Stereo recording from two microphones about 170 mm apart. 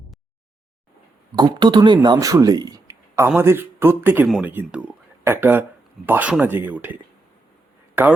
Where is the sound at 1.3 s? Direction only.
25° right (ahead or behind); by 6.9 s 10° right (ahead or behind).